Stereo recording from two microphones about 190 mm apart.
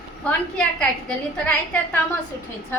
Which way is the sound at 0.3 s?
5° left (ahead or behind).